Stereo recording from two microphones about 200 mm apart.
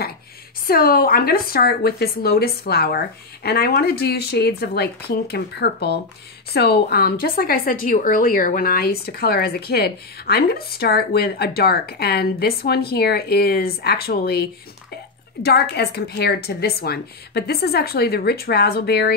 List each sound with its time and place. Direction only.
0.7 s a woman's voice: 45° left (ahead or behind)